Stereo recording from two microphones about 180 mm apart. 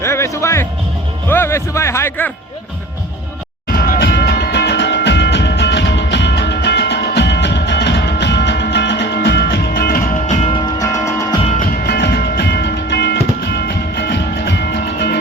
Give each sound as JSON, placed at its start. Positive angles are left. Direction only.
{"t": 0.0, "sound": "music", "side_deg": 15}
{"t": 1.3, "sound": "a man's voice", "side_deg": 15}
{"t": 3.7, "sound": "music", "side_deg": 55}
{"t": 10.8, "sound": "music", "side_deg": 20}
{"t": 11.9, "sound": "music", "side_deg": 65}